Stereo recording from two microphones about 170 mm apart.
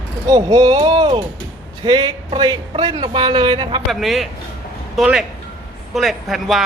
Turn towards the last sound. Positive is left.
turn(degrees=0)  # may be behind; listen again after turning